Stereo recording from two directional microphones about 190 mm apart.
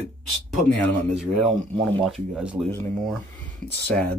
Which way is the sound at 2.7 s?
10° left (ahead or behind).